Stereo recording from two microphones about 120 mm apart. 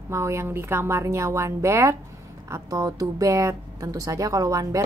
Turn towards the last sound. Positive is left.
turn(degrees=-30)  # may be behind; listen again after turning